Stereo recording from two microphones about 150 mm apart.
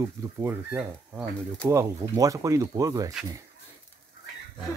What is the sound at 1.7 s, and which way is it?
Speech, 20° right (ahead or behind).